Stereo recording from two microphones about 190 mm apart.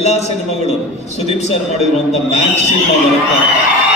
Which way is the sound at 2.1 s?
35° left (ahead or behind).